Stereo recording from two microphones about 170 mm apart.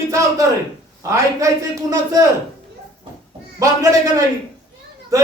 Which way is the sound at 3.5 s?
20° right (ahead or behind).